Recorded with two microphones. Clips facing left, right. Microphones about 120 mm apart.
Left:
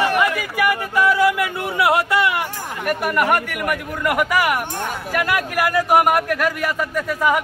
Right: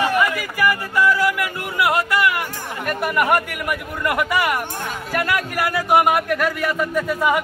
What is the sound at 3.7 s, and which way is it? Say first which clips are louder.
Speech: left 1 dB; 5° left (ahead or behind).